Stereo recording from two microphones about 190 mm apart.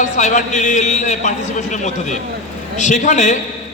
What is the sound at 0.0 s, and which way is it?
A man's voice, 40° left (ahead or behind).